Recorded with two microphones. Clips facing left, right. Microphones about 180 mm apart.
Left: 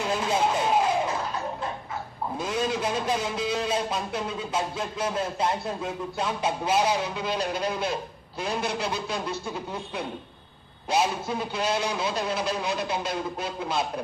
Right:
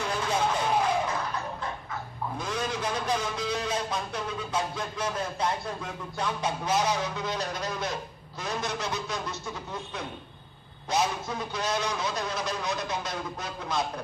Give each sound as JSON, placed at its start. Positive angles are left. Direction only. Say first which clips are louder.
{"t": 0.0, "sound": "vehicle", "louder": "left 3 dB", "side_deg": 25}
{"t": 2.4, "sound": "speech", "louder": "left 5 dB", "side_deg": 25}
{"t": 10.8, "sound": "speech", "louder": "left 3 dB", "side_deg": 30}